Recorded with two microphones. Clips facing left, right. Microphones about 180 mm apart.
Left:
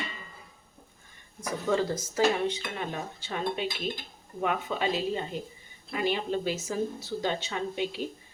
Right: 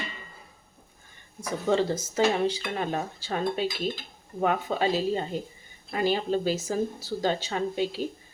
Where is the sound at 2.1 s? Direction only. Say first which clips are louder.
Right 2 dB; 35° right (ahead or behind).